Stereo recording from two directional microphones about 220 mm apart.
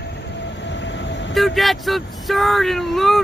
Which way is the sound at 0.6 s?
55° left (ahead or behind).